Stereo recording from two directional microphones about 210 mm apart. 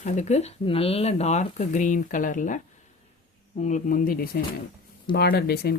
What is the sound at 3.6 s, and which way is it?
Speech, 40° left (ahead or behind).